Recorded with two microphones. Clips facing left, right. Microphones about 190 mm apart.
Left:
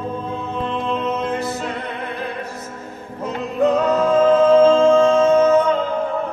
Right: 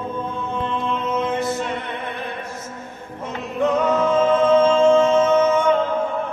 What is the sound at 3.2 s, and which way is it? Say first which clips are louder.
Music: left 3 dB; 35° left (ahead or behind).